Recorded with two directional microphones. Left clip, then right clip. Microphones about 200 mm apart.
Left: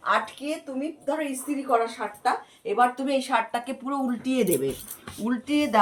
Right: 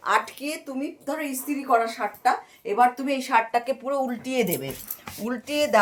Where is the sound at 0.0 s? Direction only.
65° right (ahead or behind).